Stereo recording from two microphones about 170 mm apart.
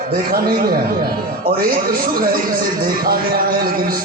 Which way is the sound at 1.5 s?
60° right (ahead or behind).